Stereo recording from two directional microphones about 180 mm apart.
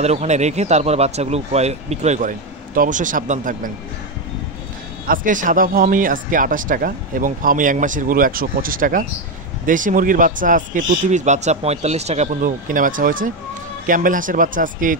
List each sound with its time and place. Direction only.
0.0 s speech: 40° right (ahead or behind)
5.0 s speech: 50° right (ahead or behind)